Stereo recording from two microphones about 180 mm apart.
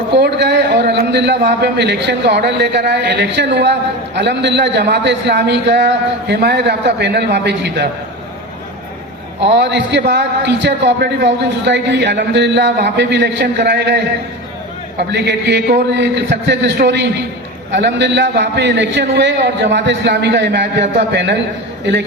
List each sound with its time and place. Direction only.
0.1 s a man's voice: 70° right (ahead or behind)
9.5 s a man's voice: 75° right (ahead or behind)